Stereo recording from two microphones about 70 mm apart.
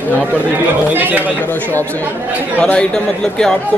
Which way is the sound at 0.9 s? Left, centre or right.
Right.